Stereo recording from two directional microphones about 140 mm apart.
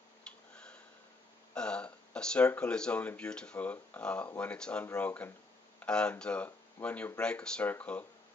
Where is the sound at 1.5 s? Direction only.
5° left (ahead or behind).